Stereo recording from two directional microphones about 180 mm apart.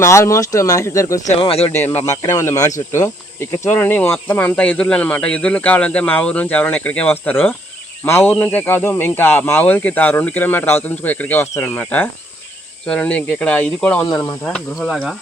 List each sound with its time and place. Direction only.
0.0 s speech: 15° left (ahead or behind)
1.4 s speech: 35° left (ahead or behind)
2.0 s speech: 15° left (ahead or behind); by 15.1 s centre (ahead or behind)